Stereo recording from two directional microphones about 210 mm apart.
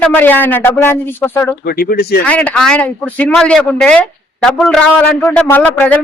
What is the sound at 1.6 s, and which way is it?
Speech, 45° left (ahead or behind).